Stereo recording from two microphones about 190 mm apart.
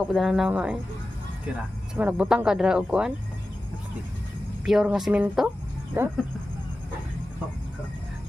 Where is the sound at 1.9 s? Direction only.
5° right (ahead or behind).